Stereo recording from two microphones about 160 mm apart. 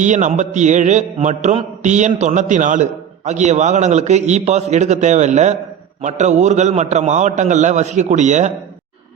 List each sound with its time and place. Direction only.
0.0 s mantra: 50° right (ahead or behind)